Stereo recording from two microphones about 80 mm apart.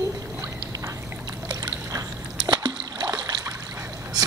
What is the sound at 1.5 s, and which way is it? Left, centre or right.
Boat, right.